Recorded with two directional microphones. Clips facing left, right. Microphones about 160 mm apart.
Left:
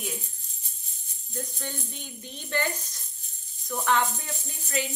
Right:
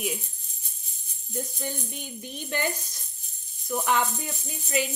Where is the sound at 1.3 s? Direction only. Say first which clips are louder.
Right 3 dB; 10° right (ahead or behind).